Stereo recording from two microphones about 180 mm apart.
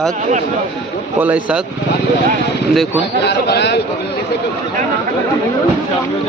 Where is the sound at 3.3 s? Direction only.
70° left (ahead or behind).